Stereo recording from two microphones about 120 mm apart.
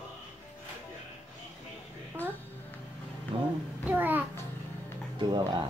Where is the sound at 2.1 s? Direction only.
15° right (ahead or behind).